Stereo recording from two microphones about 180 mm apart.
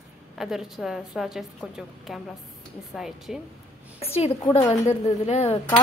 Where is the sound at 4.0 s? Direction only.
35° left (ahead or behind).